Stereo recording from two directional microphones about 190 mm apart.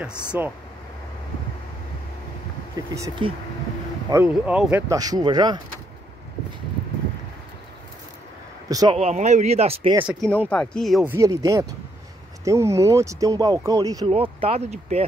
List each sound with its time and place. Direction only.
0.3 s speech: 10° right (ahead or behind)
2.7 s speech: 20° right (ahead or behind)
4.9 s a man's voice: 20° right (ahead or behind)
8.6 s speech: 20° right (ahead or behind)
8.9 s speech: 35° right (ahead or behind)
10.0 s speech: centre (ahead or behind)
11.1 s speech: 15° right (ahead or behind)
14.1 s speech: 30° right (ahead or behind)